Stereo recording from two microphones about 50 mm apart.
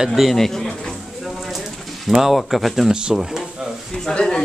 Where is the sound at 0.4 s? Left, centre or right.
Centre.